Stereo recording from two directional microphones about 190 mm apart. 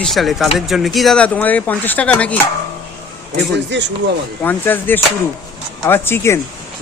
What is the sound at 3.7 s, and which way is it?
Speech, 65° right (ahead or behind).